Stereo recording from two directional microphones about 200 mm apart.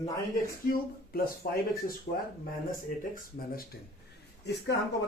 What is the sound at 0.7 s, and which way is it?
Speech, 50° left (ahead or behind).